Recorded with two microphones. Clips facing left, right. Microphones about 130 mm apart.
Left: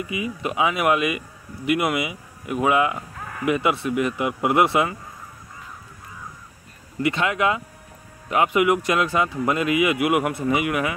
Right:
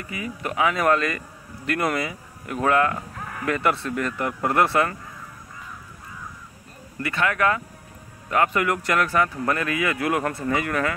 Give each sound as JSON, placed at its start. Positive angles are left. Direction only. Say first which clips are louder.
{"t": 0.0, "sound": "speech", "louder": "left 4 dB", "side_deg": 15}
{"t": 7.0, "sound": "speech", "louder": "left 2 dB", "side_deg": 20}